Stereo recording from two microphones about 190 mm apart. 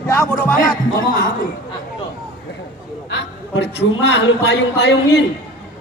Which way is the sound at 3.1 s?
65° left (ahead or behind).